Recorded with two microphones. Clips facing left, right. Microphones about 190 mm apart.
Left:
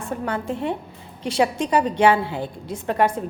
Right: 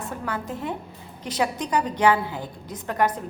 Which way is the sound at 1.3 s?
25° left (ahead or behind).